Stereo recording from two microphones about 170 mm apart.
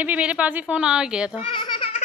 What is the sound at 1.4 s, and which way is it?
Speech, 30° left (ahead or behind).